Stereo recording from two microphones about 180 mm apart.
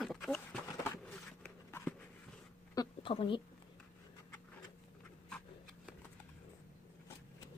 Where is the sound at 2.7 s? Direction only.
30° left (ahead or behind).